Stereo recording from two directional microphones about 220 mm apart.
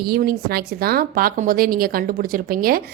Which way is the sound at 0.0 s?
45° right (ahead or behind).